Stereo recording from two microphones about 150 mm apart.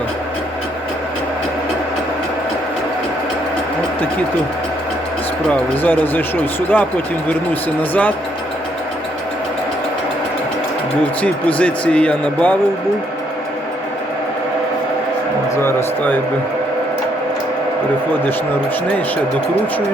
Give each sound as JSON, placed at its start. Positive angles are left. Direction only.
{"t": 5.5, "sound": "speech", "side_deg": 10}
{"t": 11.2, "sound": "speech", "side_deg": 10}
{"t": 15.5, "sound": "a sound", "side_deg": 15}